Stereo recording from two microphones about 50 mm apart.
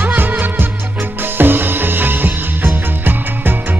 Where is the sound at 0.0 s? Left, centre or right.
Right.